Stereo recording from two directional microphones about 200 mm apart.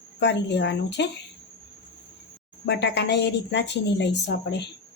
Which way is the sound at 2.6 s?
60° left (ahead or behind).